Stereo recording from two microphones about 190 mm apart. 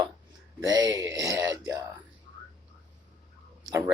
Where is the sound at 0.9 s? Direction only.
20° right (ahead or behind).